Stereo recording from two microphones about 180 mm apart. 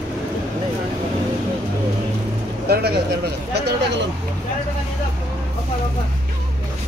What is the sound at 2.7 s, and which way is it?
Speech, 60° right (ahead or behind).